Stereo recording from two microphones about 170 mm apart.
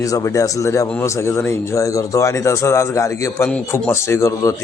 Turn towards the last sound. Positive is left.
turn(degrees=20)  # may be behind; listen again after turning